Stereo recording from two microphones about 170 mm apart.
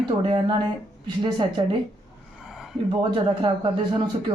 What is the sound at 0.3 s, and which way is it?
Speech, 30° right (ahead or behind).